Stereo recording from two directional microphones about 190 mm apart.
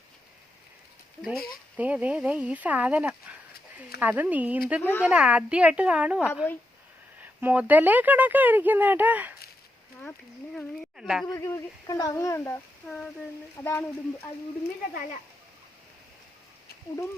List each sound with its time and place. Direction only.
1.7 s speech: 5° right (ahead or behind)
4.8 s speech: 10° left (ahead or behind)
5.0 s a woman's voice: 5° right (ahead or behind)
10.0 s a woman's voice: 5° left (ahead or behind)
11.3 s speech: 15° left (ahead or behind)